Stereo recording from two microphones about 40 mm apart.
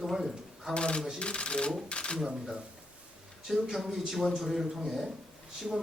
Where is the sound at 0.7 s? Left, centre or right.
Left.